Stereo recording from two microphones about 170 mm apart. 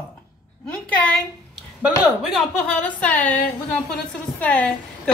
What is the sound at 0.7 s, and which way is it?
A woman's voice, 5° left (ahead or behind).